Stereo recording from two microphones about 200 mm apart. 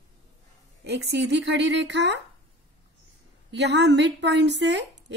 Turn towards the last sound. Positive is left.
turn(degrees=-60)  # may be behind; listen again after turning